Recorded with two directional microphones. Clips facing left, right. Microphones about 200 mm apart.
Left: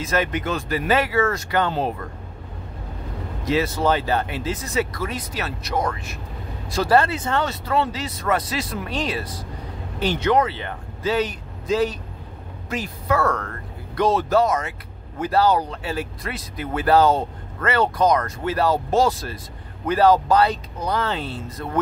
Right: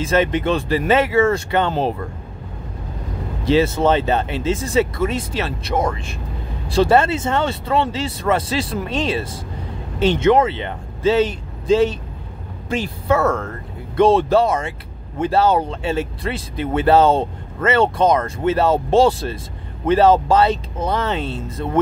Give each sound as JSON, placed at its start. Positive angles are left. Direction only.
{"t": 0.0, "sound": "speech", "side_deg": -25}
{"t": 3.4, "sound": "speech", "side_deg": -25}